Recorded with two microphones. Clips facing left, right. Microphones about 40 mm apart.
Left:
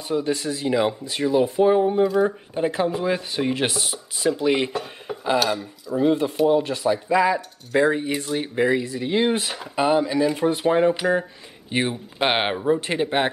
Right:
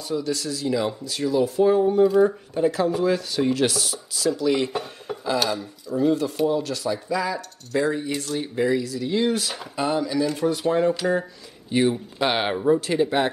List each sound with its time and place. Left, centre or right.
0.1 s speech: left
5.1 s a sound: centre
5.9 s speech: left
11.7 s speech: left